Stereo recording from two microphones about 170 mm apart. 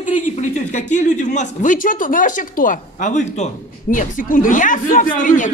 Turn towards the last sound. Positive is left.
turn(degrees=50)  # may be behind; listen again after turning